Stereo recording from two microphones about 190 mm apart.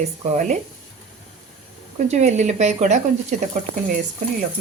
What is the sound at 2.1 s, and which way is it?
Speech, 35° right (ahead or behind).